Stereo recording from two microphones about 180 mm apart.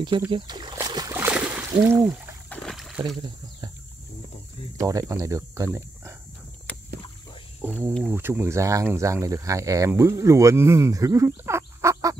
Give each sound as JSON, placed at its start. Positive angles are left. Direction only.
{"t": 0.3, "sound": "a sound", "side_deg": -25}
{"t": 2.5, "sound": "boat", "side_deg": 0}
{"t": 4.7, "sound": "speech", "side_deg": -20}
{"t": 7.6, "sound": "speech", "side_deg": -10}